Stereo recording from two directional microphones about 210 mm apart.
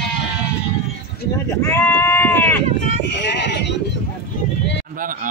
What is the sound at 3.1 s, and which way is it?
Sheep, 55° left (ahead or behind).